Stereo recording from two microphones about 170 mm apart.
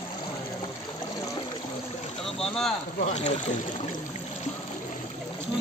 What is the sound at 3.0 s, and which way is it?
Speech, 45° left (ahead or behind).